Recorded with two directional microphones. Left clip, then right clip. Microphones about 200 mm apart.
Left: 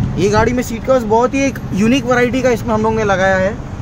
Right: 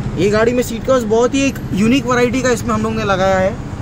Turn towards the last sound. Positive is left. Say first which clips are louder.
# left 1 dB
turn(degrees=20)  # may be behind; listen again after turning